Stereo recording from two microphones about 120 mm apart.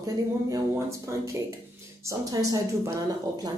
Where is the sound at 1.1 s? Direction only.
25° right (ahead or behind).